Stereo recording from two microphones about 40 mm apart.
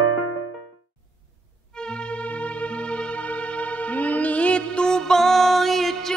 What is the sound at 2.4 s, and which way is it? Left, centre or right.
Music, left.